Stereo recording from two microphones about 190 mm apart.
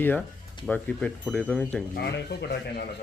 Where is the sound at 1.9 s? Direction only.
60° left (ahead or behind).